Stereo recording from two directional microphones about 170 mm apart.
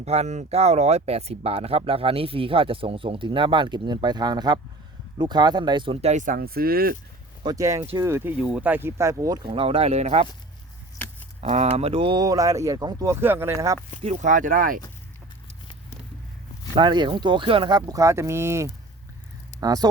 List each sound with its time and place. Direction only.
0.0 s speech: 40° right (ahead or behind); by 6.9 s 65° right (ahead or behind)
7.4 s speech: 20° right (ahead or behind)
9.6 s speech: 35° right (ahead or behind)
11.3 s speech: 40° right (ahead or behind); by 13.7 s 15° right (ahead or behind)
14.0 s speech: 45° right (ahead or behind)
16.7 s speech: 30° right (ahead or behind)